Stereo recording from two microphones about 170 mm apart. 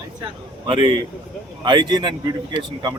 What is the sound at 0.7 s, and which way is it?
Speech, 30° right (ahead or behind).